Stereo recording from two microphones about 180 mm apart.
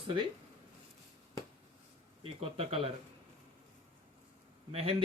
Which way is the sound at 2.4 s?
30° right (ahead or behind).